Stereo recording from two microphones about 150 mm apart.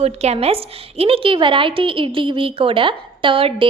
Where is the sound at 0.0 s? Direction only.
45° right (ahead or behind).